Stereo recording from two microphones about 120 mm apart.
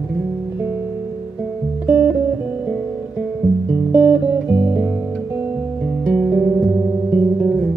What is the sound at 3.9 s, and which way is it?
Music, 20° right (ahead or behind).